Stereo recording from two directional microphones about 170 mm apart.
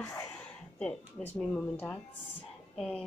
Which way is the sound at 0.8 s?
5° left (ahead or behind).